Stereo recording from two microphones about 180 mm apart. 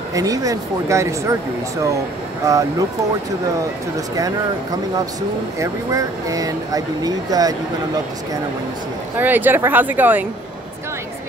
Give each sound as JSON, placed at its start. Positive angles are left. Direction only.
{"t": 0.1, "sound": "speech", "side_deg": -20}
{"t": 2.4, "sound": "speech", "side_deg": -20}
{"t": 5.6, "sound": "speech", "side_deg": -20}
{"t": 9.2, "sound": "speech", "side_deg": -10}